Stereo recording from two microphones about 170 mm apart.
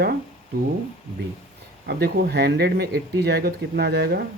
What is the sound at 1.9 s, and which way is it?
Speech, 75° right (ahead or behind).